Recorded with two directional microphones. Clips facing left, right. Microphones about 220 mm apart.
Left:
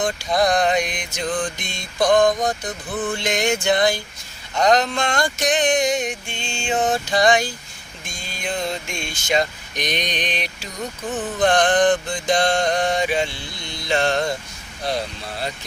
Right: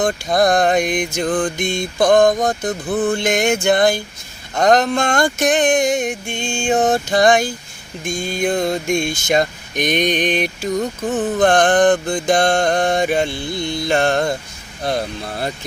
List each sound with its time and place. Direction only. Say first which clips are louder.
0.0 s mantra: right 4 dB; 50° right (ahead or behind)